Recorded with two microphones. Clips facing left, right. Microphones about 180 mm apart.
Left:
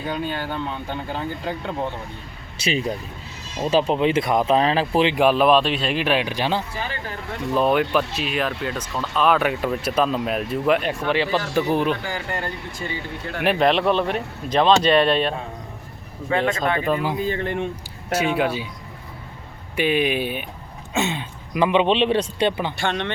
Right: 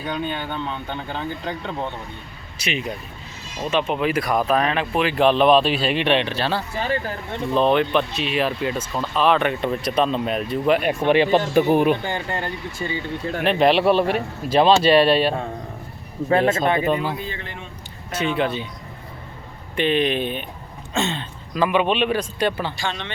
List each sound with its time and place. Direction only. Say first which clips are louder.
0.0 s speech: even; 5° left (ahead or behind)
2.6 s speech: left 3 dB; 30° left (ahead or behind)
5.1 s speech: right 3 dB; 10° left (ahead or behind)
11.0 s speech: right 5 dB; 20° right (ahead or behind)
12.0 s speech: right 2 dB; 25° right (ahead or behind)
13.6 s speech: right 3 dB; 5° right (ahead or behind)
16.3 s speech: right 3 dB; 30° right (ahead or behind)
17.2 s speech: left 10 dB; 45° left (ahead or behind)
18.1 s speech: left 1 dB; 10° left (ahead or behind)
19.7 s speech: even; 10° left (ahead or behind)
22.8 s speech: left 4 dB; 60° left (ahead or behind)